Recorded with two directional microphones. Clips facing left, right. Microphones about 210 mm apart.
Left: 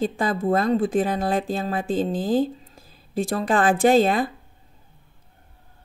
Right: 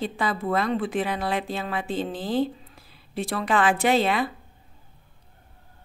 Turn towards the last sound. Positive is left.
turn(degrees=45)  # may be behind; listen again after turning